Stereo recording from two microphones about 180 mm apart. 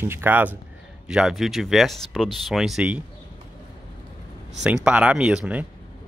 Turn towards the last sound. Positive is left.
turn(degrees=-5)  # may be behind; listen again after turning